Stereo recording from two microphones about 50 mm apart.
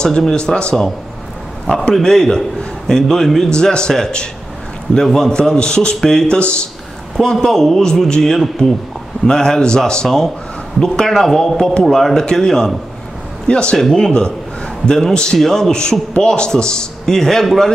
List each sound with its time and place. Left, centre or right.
0.2 s a man's voice: centre
2.0 s a man's voice: centre
6.2 s speech: centre
7.2 s a man's voice: centre
10.0 s a man's voice: centre
13.5 s speech: centre
13.7 s a man's voice: centre